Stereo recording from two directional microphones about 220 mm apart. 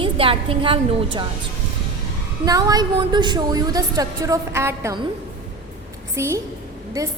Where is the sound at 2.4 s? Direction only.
15° right (ahead or behind).